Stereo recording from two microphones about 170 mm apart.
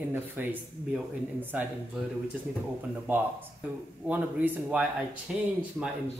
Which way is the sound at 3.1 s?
10° right (ahead or behind).